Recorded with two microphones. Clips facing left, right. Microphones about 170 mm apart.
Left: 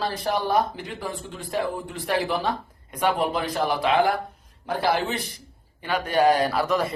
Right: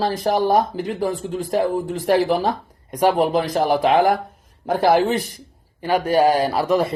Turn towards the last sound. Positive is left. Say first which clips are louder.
# right 4 dB
turn(degrees=-30)  # may be behind; listen again after turning